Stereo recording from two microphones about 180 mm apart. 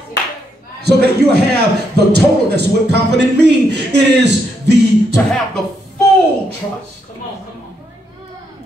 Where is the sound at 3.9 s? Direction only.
70° right (ahead or behind).